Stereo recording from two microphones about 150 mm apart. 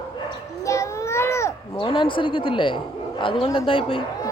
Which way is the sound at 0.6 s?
20° left (ahead or behind).